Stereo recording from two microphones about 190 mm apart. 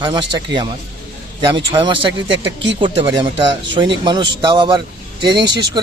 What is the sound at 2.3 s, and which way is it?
Speech, 70° right (ahead or behind).